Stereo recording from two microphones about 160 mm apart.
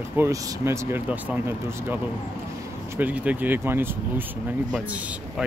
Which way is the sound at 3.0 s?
10° right (ahead or behind).